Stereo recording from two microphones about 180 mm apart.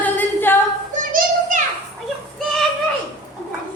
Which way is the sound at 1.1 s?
45° right (ahead or behind).